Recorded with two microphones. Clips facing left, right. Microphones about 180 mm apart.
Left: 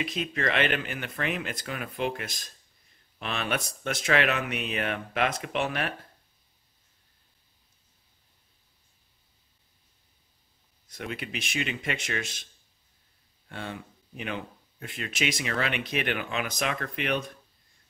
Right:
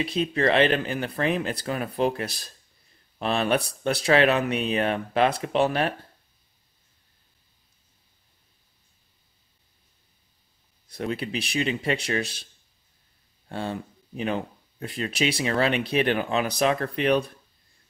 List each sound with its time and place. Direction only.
0.0 s speech: 30° right (ahead or behind)
10.9 s speech: 35° right (ahead or behind)
13.5 s speech: 35° right (ahead or behind)